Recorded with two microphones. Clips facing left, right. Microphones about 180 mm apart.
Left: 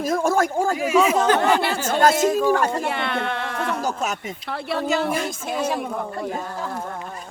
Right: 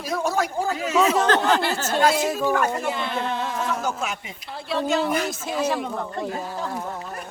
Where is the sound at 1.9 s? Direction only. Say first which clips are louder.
Left 3 dB; 50° left (ahead or behind).